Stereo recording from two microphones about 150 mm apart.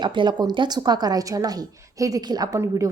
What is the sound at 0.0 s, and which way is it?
A woman's voice, 30° right (ahead or behind).